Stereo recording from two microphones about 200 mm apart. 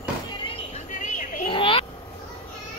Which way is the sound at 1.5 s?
25° left (ahead or behind).